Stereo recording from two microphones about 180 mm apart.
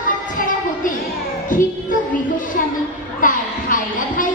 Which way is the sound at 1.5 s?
50° left (ahead or behind).